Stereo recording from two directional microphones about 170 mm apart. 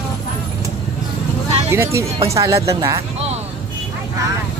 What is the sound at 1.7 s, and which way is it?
Speech, 15° right (ahead or behind).